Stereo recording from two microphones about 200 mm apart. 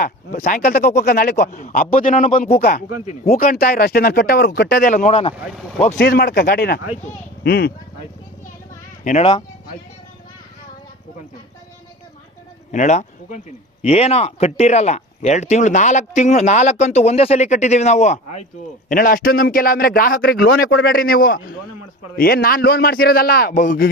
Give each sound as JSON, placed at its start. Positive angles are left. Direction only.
{"t": 0.0, "sound": "speech", "side_deg": 45}
{"t": 6.0, "sound": "speech", "side_deg": 55}
{"t": 9.0, "sound": "speech", "side_deg": 35}
{"t": 12.7, "sound": "speech", "side_deg": 35}